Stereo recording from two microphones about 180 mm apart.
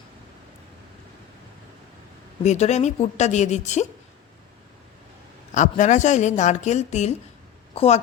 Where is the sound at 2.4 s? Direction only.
40° left (ahead or behind).